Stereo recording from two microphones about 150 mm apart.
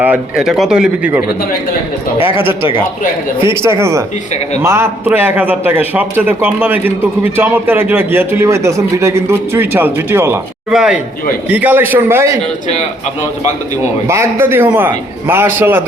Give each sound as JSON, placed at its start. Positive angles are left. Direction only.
{"t": 0.0, "sound": "speech", "side_deg": -5}
{"t": 2.2, "sound": "a man's voice", "side_deg": -15}
{"t": 10.7, "sound": "a man's voice", "side_deg": -5}
{"t": 14.1, "sound": "a man's voice", "side_deg": -15}